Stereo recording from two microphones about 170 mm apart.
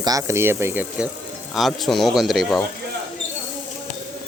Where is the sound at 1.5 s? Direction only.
Centre (ahead or behind).